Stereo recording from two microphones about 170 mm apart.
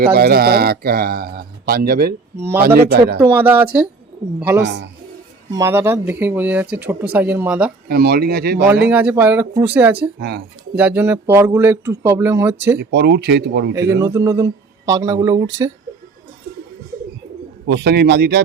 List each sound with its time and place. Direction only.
0.0 s speech: 65° right (ahead or behind)
3.2 s speech: 10° right (ahead or behind)
4.6 s a man's voice: 90° right
5.5 s speech: 20° right (ahead or behind)
7.9 s speech: 65° right (ahead or behind)
8.9 s speech: 10° right (ahead or behind)
10.2 s a man's voice: 80° right
10.8 s speech: 10° right (ahead or behind)
12.7 s speech: 75° right (ahead or behind)
13.7 s speech: 15° right (ahead or behind)
17.7 s a man's voice: 85° right